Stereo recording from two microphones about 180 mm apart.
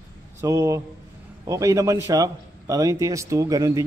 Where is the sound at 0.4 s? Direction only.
15° right (ahead or behind).